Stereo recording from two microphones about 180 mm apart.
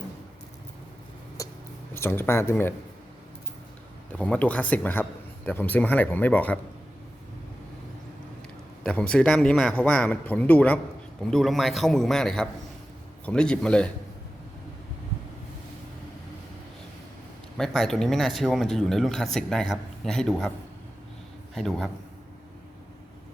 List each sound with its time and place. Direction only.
1.4 s a sound: 15° left (ahead or behind)
1.9 s speech: 15° left (ahead or behind)
4.1 s speech: 5° left (ahead or behind)
8.8 s speech: 5° left (ahead or behind)
17.6 s speech: 5° left (ahead or behind)
21.5 s a man's voice: centre (ahead or behind)